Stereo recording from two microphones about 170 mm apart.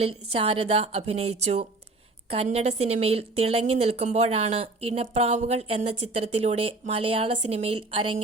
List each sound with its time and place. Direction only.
0.0 s a woman's voice: 35° right (ahead or behind)